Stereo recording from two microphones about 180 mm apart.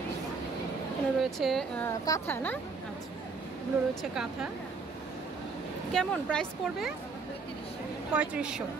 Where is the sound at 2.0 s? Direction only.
15° left (ahead or behind).